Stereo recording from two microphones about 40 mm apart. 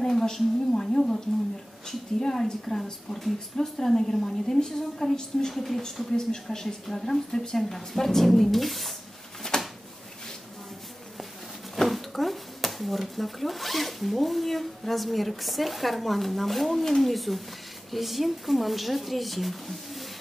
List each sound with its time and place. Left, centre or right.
0.0 s a woman's voice: centre
5.5 s speech: centre
6.1 s a woman's voice: centre
9.5 s a sound: centre
11.9 s speech: centre